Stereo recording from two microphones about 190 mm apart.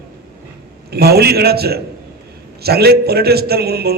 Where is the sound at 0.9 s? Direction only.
55° right (ahead or behind).